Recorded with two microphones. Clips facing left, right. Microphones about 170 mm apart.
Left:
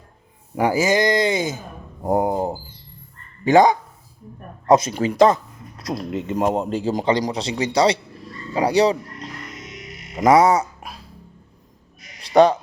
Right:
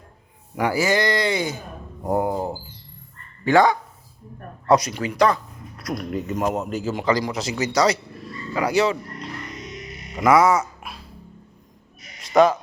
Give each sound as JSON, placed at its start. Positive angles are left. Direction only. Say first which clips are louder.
{"t": 0.7, "sound": "speech", "louder": "left 2 dB", "side_deg": 20}
{"t": 10.2, "sound": "speech", "louder": "left 2 dB", "side_deg": 35}
{"t": 12.2, "sound": "a sound", "louder": "left 2 dB", "side_deg": 35}